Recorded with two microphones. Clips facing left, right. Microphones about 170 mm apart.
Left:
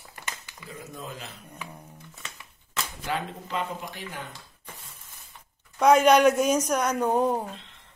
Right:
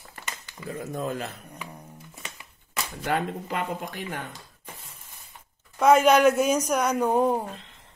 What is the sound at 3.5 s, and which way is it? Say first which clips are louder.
Speech: even; 55° right (ahead or behind).